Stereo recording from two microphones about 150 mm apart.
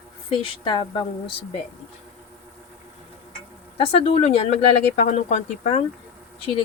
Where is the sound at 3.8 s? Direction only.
45° left (ahead or behind).